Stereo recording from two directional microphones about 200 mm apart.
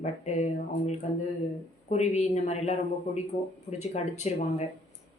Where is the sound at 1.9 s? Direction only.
35° left (ahead or behind).